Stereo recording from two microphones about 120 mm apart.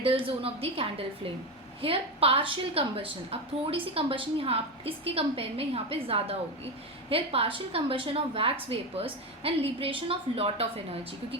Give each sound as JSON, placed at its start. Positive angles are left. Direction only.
{"t": 0.0, "sound": "a woman's voice", "side_deg": -50}